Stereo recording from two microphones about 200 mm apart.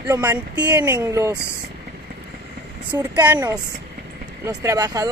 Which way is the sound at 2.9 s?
10° right (ahead or behind).